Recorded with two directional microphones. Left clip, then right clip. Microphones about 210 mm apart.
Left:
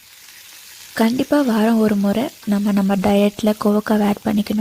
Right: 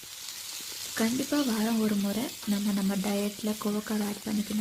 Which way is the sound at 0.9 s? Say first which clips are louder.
Left 12 dB; 45° left (ahead or behind).